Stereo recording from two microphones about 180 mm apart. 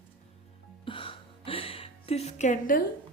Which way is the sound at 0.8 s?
30° left (ahead or behind).